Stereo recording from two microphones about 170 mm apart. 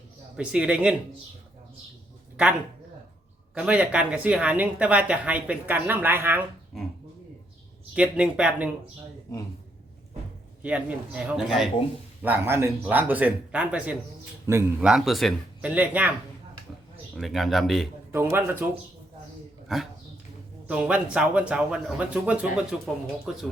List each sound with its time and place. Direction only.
0.3 s speech: 5° right (ahead or behind)
3.5 s speech: 5° right (ahead or behind)
7.9 s speech: 5° right (ahead or behind)
10.6 s speech: 5° right (ahead or behind)
14.8 s speech: centre (ahead or behind)
17.2 s speech: centre (ahead or behind)
18.1 s speech: 15° right (ahead or behind)
19.6 s speech: centre (ahead or behind)